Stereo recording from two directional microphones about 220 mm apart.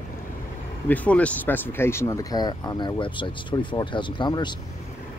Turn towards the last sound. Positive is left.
turn(degrees=20)  # may be behind; listen again after turning